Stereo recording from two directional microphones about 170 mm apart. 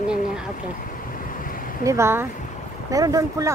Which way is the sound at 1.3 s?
55° left (ahead or behind).